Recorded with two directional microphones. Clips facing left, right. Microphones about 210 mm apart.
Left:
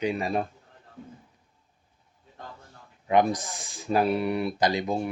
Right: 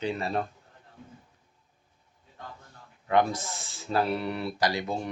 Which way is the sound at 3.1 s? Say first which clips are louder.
Left 2 dB; 15° left (ahead or behind).